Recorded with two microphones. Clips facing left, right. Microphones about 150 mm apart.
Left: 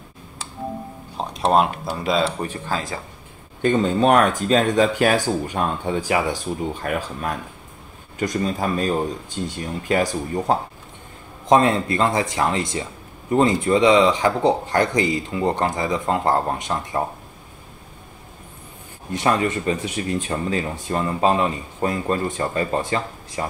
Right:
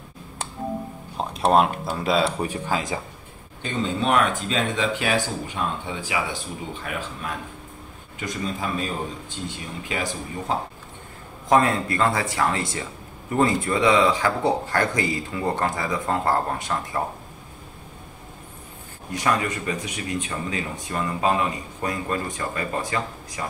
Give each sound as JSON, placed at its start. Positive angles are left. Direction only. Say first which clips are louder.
{"t": 1.1, "sound": "speech", "louder": "left 1 dB", "side_deg": -5}
{"t": 3.6, "sound": "speech", "louder": "left 7 dB", "side_deg": 45}
{"t": 11.4, "sound": "speech", "louder": "left 3 dB", "side_deg": 20}
{"t": 19.1, "sound": "speech", "louder": "left 4 dB", "side_deg": 25}